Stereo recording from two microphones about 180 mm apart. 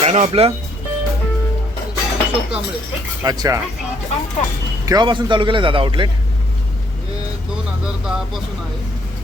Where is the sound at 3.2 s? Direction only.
20° right (ahead or behind).